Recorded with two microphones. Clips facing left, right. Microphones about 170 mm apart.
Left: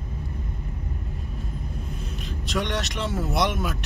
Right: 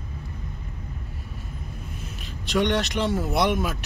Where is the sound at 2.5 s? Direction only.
Centre (ahead or behind).